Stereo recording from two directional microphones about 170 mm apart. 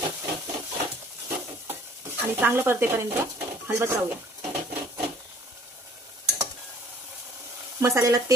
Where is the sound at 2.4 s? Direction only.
15° right (ahead or behind).